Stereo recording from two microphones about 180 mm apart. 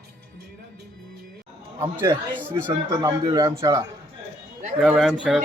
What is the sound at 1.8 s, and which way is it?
A man's voice, 15° right (ahead or behind).